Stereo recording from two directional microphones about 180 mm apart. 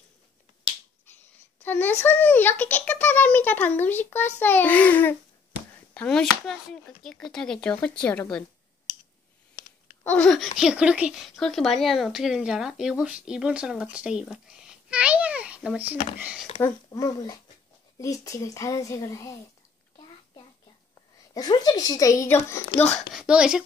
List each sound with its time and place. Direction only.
1.6 s a child's voice: 10° left (ahead or behind)
10.0 s speech: 5° left (ahead or behind)
16.6 s a child's voice: 20° left (ahead or behind)
21.3 s a child's voice: 20° left (ahead or behind)
23.1 s speech: 5° right (ahead or behind)